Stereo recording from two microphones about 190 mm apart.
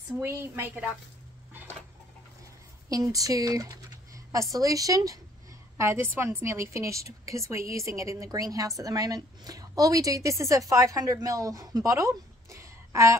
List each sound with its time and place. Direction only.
0.2 s a woman's voice: 15° right (ahead or behind)
2.9 s a woman's voice: 20° right (ahead or behind)